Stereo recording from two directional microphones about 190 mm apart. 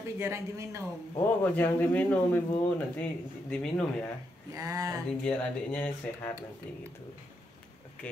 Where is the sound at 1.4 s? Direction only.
10° left (ahead or behind).